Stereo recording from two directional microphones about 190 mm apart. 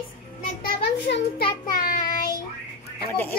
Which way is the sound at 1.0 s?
60° left (ahead or behind).